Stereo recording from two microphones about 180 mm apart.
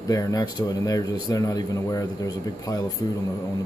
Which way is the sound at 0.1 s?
20° left (ahead or behind).